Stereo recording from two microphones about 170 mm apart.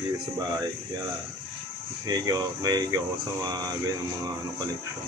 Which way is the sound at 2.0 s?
25° right (ahead or behind).